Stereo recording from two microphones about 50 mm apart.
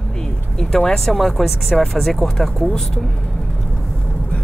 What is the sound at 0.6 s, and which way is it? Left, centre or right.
Speech, centre.